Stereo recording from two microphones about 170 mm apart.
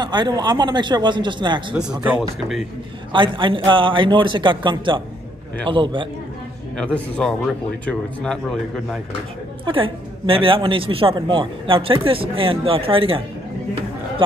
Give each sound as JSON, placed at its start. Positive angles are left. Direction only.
{"t": 0.0, "sound": "a man's voice", "side_deg": -25}
{"t": 3.1, "sound": "a man's voice", "side_deg": -30}
{"t": 6.8, "sound": "speech", "side_deg": 5}
{"t": 9.7, "sound": "a man's voice", "side_deg": -30}